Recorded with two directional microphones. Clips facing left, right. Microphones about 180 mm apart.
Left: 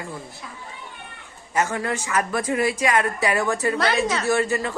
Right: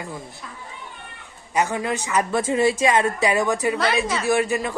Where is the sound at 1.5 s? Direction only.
15° right (ahead or behind).